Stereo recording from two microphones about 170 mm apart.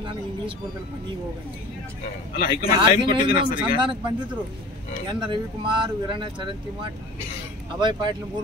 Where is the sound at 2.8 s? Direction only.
30° right (ahead or behind).